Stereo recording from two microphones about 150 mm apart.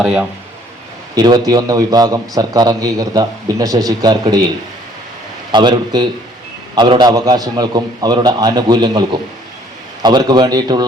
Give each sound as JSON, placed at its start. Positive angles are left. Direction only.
{"t": 0.0, "sound": "speech", "side_deg": -5}
{"t": 1.1, "sound": "a man's voice", "side_deg": -25}
{"t": 5.5, "sound": "a man's voice", "side_deg": -30}